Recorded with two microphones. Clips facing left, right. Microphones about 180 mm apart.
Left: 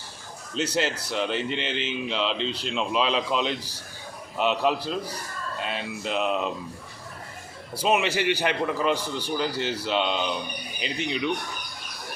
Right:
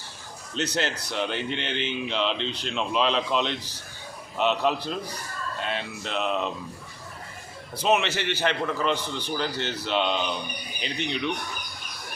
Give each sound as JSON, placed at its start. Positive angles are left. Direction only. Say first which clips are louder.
{"t": 0.5, "sound": "a man's voice", "louder": "left 2 dB", "side_deg": 5}
{"t": 7.8, "sound": "a man's voice", "louder": "even", "side_deg": 10}